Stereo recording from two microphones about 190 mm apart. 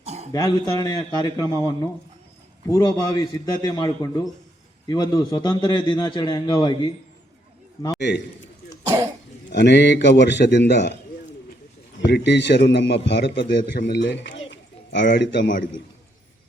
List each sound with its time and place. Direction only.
0.0 s a sound: 35° right (ahead or behind)
0.3 s a man's voice: 20° left (ahead or behind)
7.9 s a man's voice: 65° left (ahead or behind)
9.5 s a man's voice: 65° left (ahead or behind)
12.0 s a man's voice: 65° left (ahead or behind)
14.5 s a sound: 70° left (ahead or behind)